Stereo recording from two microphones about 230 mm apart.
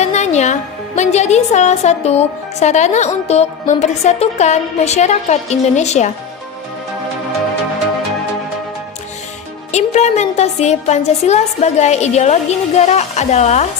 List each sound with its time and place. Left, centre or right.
0.0 s a woman's voice: left
9.7 s a woman's voice: left